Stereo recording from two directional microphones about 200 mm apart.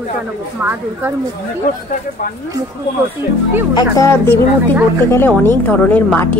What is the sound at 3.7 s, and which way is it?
Speech, 20° left (ahead or behind).